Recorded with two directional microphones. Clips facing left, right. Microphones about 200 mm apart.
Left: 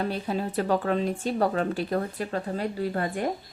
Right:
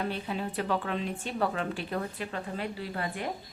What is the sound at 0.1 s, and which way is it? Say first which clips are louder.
Speech: left 5 dB; 40° left (ahead or behind).